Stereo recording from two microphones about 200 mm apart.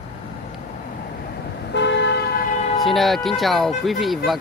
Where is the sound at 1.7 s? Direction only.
60° left (ahead or behind).